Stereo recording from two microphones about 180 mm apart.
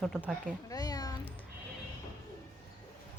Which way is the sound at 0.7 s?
20° left (ahead or behind).